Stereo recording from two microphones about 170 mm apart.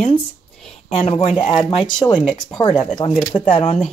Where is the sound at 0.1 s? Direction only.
5° left (ahead or behind).